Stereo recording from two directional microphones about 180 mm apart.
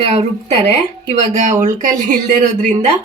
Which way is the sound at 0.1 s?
35° right (ahead or behind).